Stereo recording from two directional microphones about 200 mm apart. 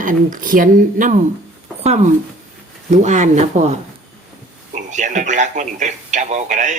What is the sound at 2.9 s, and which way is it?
Speech, 35° right (ahead or behind).